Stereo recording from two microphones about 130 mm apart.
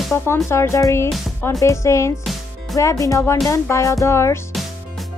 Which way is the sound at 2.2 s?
Centre (ahead or behind).